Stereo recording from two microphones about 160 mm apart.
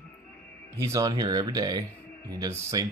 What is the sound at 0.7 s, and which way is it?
Speech, 20° right (ahead or behind).